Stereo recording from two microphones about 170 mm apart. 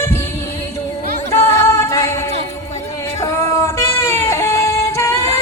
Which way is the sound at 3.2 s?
15° left (ahead or behind).